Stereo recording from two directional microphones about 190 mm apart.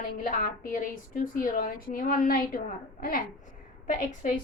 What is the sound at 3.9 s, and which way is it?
Speech, 45° left (ahead or behind).